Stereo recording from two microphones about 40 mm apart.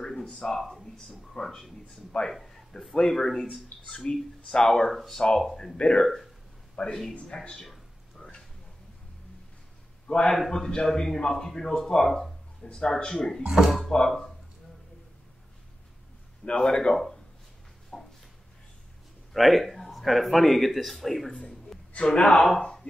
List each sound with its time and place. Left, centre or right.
0.0 s a sound: centre
0.6 s a man's voice: centre
0.8 s speech: centre
8.2 s a sound: centre
10.0 s a man's voice: left
13.7 s speech: centre
13.9 s speech: centre
16.4 s speech: centre
17.9 s a sound: centre
19.3 s speech: centre
21.3 s speech: left